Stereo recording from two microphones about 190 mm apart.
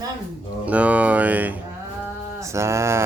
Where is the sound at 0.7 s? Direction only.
5° right (ahead or behind).